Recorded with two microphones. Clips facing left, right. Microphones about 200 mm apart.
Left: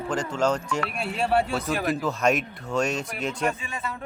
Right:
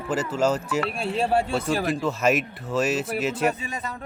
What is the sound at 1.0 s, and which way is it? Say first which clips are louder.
Speech: right 3 dB; 30° right (ahead or behind).